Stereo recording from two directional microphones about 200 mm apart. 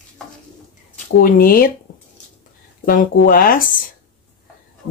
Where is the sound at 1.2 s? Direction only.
45° left (ahead or behind).